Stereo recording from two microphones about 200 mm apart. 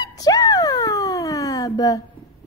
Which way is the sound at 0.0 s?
20° left (ahead or behind).